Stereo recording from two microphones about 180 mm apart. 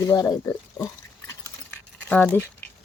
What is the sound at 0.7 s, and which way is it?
Pig, 15° left (ahead or behind).